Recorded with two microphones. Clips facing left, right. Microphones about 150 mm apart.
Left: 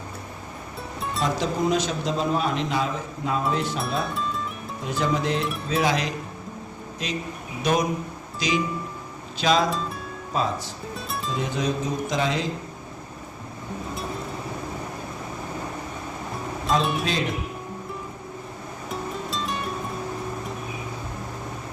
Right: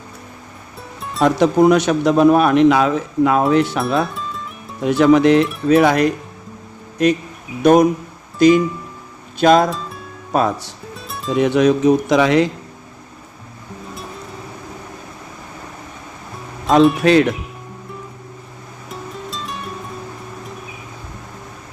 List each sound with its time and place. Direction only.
1.2 s a man's voice: 65° right (ahead or behind)
4.1 s music: centre (ahead or behind)
4.8 s a man's voice: 75° right (ahead or behind); by 6.1 s 60° right (ahead or behind)
7.6 s speech: 55° right (ahead or behind)
9.6 s music: centre (ahead or behind)
10.3 s speech: 65° right (ahead or behind)
10.9 s music: centre (ahead or behind)
11.3 s a man's voice: 75° right (ahead or behind)
17.0 s a man's voice: 70° right (ahead or behind)
18.9 s music: centre (ahead or behind)